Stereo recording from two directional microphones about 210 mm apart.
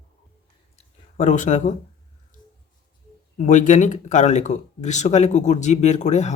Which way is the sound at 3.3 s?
35° left (ahead or behind).